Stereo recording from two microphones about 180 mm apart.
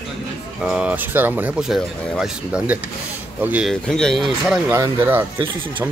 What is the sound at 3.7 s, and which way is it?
Speech, 5° left (ahead or behind).